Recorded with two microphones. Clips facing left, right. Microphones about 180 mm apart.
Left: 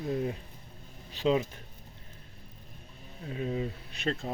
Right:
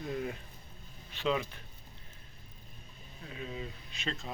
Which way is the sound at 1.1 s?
35° left (ahead or behind).